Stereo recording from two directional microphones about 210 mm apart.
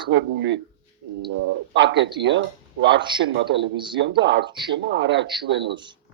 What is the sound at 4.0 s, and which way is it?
Speech, 60° right (ahead or behind).